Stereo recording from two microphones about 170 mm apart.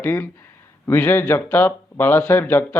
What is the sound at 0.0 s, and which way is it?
Speech, 10° left (ahead or behind).